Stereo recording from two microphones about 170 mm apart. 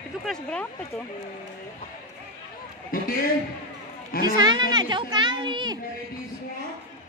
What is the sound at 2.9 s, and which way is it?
Speech, 55° left (ahead or behind).